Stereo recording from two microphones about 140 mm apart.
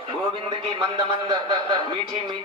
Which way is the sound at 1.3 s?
30° right (ahead or behind).